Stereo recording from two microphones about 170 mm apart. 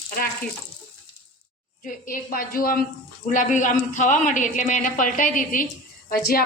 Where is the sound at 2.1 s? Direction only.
55° left (ahead or behind).